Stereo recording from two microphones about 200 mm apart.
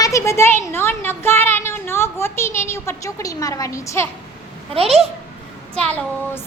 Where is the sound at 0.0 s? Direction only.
15° left (ahead or behind).